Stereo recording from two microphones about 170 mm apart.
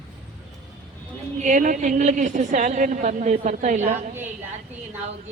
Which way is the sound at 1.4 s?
50° right (ahead or behind).